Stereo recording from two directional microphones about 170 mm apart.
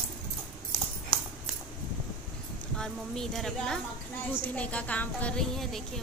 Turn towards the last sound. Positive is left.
turn(degrees=0)  # may be behind; listen again after turning